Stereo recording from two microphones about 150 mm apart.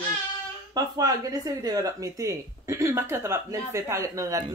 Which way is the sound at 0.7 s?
25° right (ahead or behind).